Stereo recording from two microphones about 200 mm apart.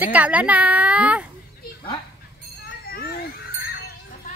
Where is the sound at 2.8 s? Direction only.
50° left (ahead or behind).